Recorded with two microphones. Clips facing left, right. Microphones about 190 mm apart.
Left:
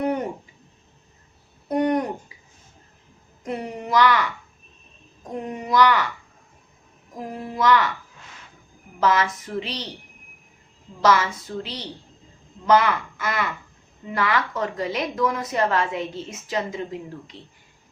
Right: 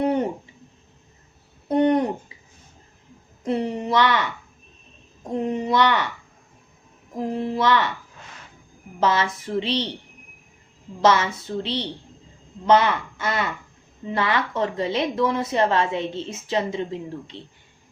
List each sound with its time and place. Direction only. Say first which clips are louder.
0.0 s a sound: right 3 dB; 30° right (ahead or behind)
1.6 s a sound: right 3 dB; 25° right (ahead or behind)
3.4 s a woman's voice: right 5 dB; 30° right (ahead or behind)
5.3 s a woman's voice: right 3 dB; 25° right (ahead or behind)
7.3 s a woman's voice: left 1 dB; 25° right (ahead or behind)
9.0 s a woman's voice: even; 30° right (ahead or behind)
11.0 s a woman's voice: right 1 dB; 25° right (ahead or behind)